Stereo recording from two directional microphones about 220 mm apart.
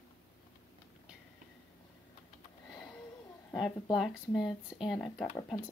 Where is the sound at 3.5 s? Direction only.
Centre (ahead or behind).